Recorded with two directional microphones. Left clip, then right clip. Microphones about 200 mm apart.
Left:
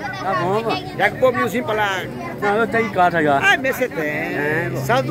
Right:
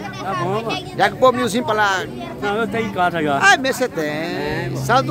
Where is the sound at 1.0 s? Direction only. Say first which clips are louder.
Right 3 dB; 35° right (ahead or behind).